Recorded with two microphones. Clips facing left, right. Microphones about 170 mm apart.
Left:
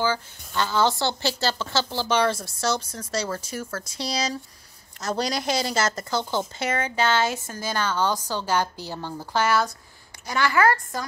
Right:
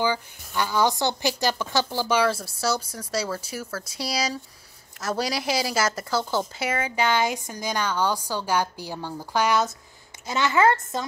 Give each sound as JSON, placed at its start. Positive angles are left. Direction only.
{"t": 0.5, "sound": "a woman's voice", "side_deg": -10}